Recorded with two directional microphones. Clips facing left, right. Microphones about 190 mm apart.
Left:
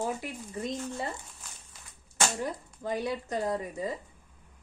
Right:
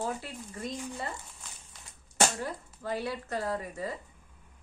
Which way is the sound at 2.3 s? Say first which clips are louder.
Left 3 dB; 20° left (ahead or behind).